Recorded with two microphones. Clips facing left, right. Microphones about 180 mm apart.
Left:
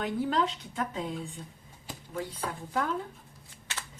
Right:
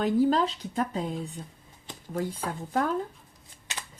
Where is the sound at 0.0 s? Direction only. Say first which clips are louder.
Right 6 dB; 35° right (ahead or behind).